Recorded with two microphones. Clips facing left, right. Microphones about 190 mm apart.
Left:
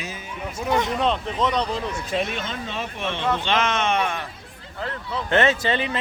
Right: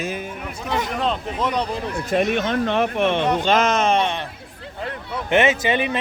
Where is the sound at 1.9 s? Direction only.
55° right (ahead or behind).